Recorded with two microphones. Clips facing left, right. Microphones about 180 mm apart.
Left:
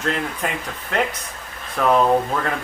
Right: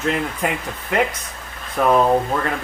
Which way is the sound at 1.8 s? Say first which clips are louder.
Right 1 dB; 10° right (ahead or behind).